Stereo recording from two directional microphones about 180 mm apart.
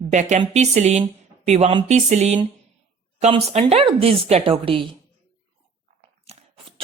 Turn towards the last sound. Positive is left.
turn(degrees=-30)  # may be behind; listen again after turning